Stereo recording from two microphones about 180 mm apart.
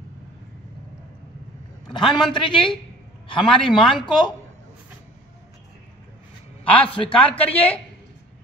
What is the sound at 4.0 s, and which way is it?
Speech, 25° left (ahead or behind).